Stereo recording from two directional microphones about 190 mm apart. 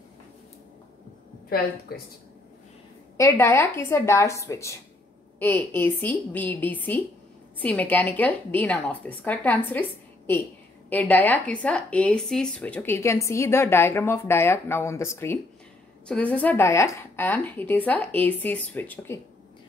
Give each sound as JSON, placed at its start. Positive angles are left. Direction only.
{"t": 1.5, "sound": "a woman's voice", "side_deg": 55}
{"t": 3.2, "sound": "speech", "side_deg": 15}